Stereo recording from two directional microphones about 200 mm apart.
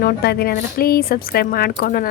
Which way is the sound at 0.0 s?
50° left (ahead or behind).